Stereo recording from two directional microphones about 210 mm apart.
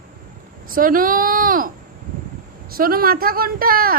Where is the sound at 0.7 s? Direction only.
40° right (ahead or behind).